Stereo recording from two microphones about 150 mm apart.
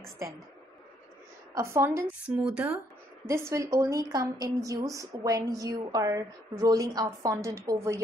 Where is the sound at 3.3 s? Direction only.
20° right (ahead or behind).